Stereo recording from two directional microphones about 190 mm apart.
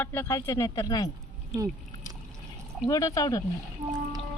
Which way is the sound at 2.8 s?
20° left (ahead or behind).